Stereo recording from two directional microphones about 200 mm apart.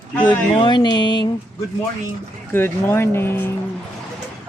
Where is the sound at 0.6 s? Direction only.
25° left (ahead or behind).